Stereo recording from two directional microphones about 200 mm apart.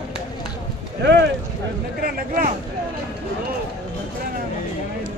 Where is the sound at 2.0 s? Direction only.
45° right (ahead or behind).